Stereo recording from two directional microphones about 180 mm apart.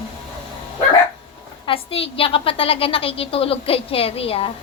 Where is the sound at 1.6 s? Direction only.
30° left (ahead or behind).